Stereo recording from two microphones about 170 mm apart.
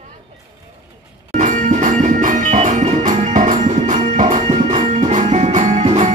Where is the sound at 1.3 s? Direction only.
45° right (ahead or behind).